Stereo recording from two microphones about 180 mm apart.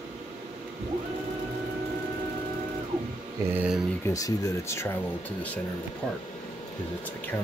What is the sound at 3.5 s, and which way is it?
Speech, 5° right (ahead or behind).